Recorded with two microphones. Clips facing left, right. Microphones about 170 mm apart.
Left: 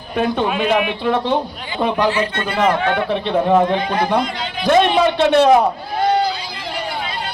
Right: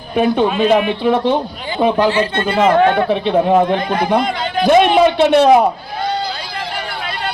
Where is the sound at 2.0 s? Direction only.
30° right (ahead or behind).